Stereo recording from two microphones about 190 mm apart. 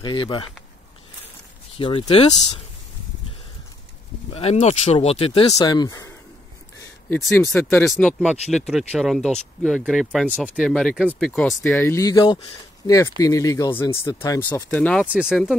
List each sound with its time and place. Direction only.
0.0 s speech: 25° left (ahead or behind)
1.8 s speech: 30° left (ahead or behind)
4.3 s speech: 35° left (ahead or behind)
5.5 s speech: 20° left (ahead or behind)
14.8 s speech: 5° left (ahead or behind)